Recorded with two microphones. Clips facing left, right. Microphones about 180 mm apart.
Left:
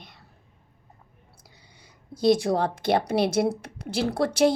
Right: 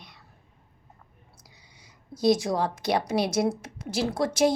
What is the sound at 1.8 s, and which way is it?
A woman's voice, 55° left (ahead or behind).